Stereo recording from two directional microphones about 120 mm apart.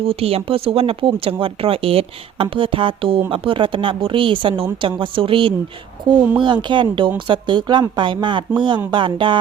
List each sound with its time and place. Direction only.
0.0 s speech: 55° right (ahead or behind)